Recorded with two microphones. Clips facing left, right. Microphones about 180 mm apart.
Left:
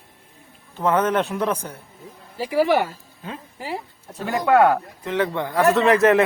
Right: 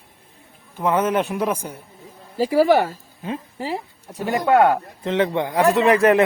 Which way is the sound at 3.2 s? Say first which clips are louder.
Right 5 dB; 25° right (ahead or behind).